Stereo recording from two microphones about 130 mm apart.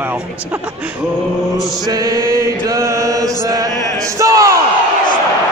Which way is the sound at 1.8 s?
30° right (ahead or behind).